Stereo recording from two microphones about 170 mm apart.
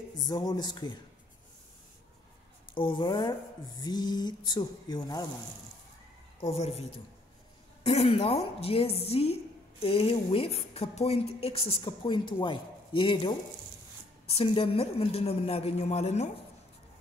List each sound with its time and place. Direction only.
0.3 s speech: 25° left (ahead or behind)
2.7 s speech: 30° left (ahead or behind)
6.4 s a woman's voice: 40° left (ahead or behind)